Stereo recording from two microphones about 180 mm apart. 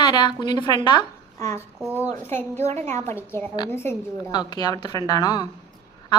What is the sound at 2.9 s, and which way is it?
A woman's voice, 15° left (ahead or behind).